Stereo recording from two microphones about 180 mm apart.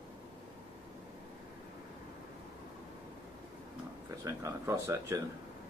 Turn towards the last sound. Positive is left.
turn(degrees=-15)  # may be behind; listen again after turning